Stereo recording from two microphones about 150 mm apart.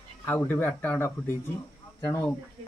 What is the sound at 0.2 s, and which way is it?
Speech, 15° left (ahead or behind).